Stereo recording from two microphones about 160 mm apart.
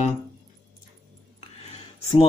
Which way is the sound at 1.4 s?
40° left (ahead or behind).